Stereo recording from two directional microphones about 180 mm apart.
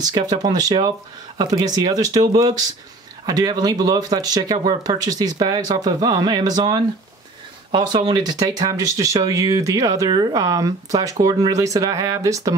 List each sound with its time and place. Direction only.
0.0 s speech: 20° right (ahead or behind)